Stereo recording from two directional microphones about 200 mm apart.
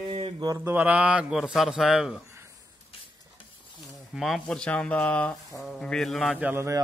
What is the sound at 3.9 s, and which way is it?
Speech, centre (ahead or behind).